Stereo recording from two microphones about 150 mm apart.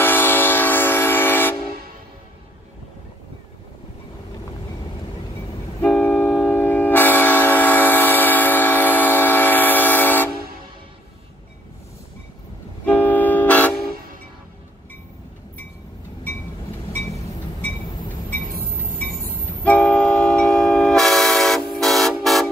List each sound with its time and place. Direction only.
0.0 s train: 15° left (ahead or behind)
5.8 s train: 10° left (ahead or behind)
12.8 s vehicle: 10° left (ahead or behind)
19.6 s train: 10° left (ahead or behind)